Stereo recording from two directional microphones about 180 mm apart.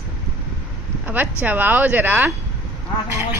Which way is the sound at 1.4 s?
10° right (ahead or behind).